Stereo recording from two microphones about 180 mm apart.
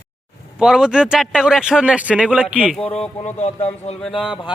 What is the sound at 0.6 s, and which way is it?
A man's voice, 5° right (ahead or behind).